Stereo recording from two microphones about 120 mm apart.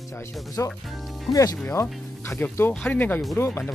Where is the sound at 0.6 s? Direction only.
25° left (ahead or behind).